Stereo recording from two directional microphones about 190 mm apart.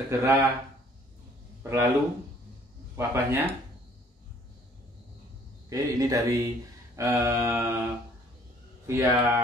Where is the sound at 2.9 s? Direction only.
15° right (ahead or behind).